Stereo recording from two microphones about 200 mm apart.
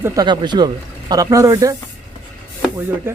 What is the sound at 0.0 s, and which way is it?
Speech, 20° right (ahead or behind).